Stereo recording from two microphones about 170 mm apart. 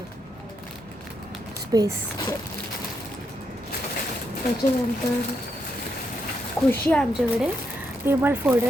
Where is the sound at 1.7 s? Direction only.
20° right (ahead or behind).